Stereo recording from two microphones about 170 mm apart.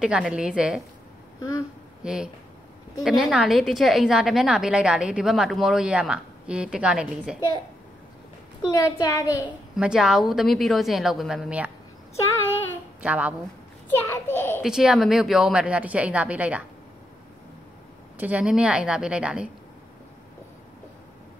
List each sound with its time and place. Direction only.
0.0 s a woman's voice: 5° right (ahead or behind)
2.0 s a woman's voice: 5° right (ahead or behind)
8.6 s a woman's voice: 20° left (ahead or behind)
9.4 s a woman's voice: 5° right (ahead or behind)
13.0 s a woman's voice: 10° right (ahead or behind)
13.8 s a child's voice: 15° left (ahead or behind)
14.6 s a woman's voice: 5° right (ahead or behind)
18.1 s a woman's voice: 10° right (ahead or behind)